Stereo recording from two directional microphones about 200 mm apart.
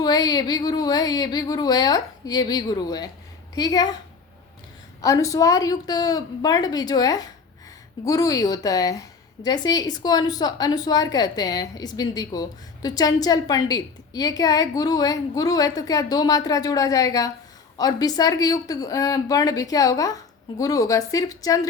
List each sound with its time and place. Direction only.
0.0 s a woman's voice: 20° left (ahead or behind)
5.0 s a woman's voice: 15° left (ahead or behind)